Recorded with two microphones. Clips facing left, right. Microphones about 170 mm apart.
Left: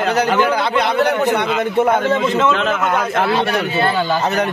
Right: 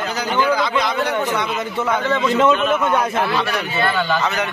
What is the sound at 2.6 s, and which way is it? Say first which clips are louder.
Speech: even; 90° left.